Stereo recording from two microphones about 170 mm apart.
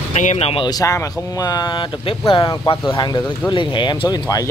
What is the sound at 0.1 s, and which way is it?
Speech, 45° left (ahead or behind).